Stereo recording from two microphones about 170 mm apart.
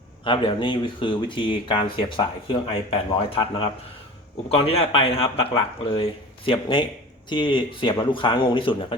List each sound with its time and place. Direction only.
0.3 s speech: 30° left (ahead or behind)